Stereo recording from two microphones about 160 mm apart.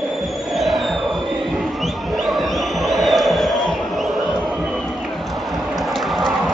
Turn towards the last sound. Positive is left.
turn(degrees=0)  # may be behind; listen again after turning